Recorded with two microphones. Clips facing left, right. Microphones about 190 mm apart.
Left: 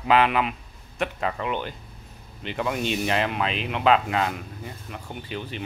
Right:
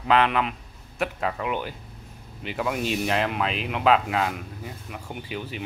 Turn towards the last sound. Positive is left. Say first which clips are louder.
# even
turn(degrees=-10)  # may be behind; listen again after turning